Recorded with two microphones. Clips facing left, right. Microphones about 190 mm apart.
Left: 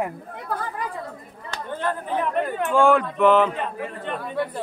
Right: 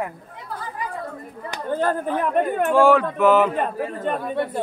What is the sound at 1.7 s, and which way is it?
Speech, 40° right (ahead or behind).